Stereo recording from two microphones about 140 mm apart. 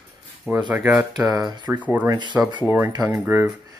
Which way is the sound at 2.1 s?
30° right (ahead or behind).